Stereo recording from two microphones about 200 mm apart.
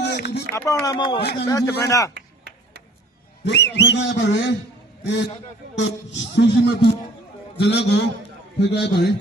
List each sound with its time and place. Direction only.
0.0 s a sound: 55° left (ahead or behind)
0.5 s a man's voice: 15° left (ahead or behind)
1.2 s a man's voice: 55° left (ahead or behind)
1.5 s a man's voice: 15° left (ahead or behind)
3.4 s speech: 60° left (ahead or behind)